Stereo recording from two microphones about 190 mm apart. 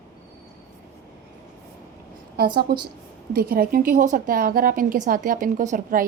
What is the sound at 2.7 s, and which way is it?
A woman's voice, 55° right (ahead or behind).